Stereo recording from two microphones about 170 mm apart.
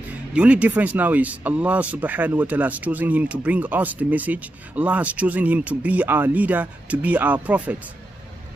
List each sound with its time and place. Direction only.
0.3 s speech: 5° right (ahead or behind)